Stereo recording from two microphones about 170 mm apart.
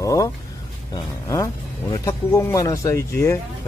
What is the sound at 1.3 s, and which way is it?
Speech, 20° left (ahead or behind).